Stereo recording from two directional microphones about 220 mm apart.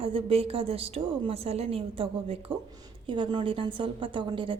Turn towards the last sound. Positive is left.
turn(degrees=-20)  # may be behind; listen again after turning